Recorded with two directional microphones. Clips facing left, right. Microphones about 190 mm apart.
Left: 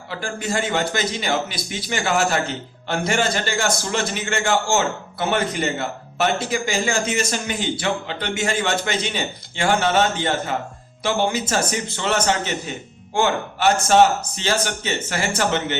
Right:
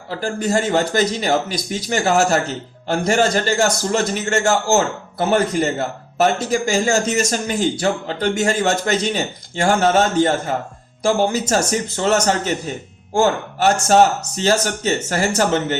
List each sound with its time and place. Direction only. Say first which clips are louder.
0.1 s a man's voice: right 6 dB; 40° right (ahead or behind)